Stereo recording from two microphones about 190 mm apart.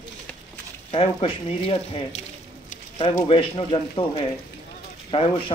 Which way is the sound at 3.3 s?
30° left (ahead or behind).